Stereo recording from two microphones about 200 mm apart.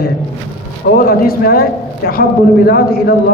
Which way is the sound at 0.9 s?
45° left (ahead or behind).